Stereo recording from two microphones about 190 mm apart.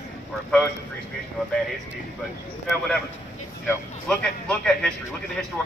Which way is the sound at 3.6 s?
5° left (ahead or behind).